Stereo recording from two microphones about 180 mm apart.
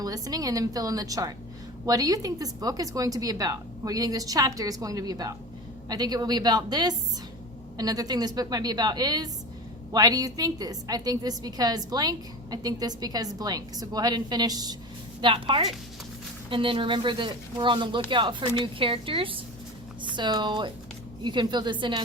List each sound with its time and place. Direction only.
0.0 s a woman's voice: 20° right (ahead or behind)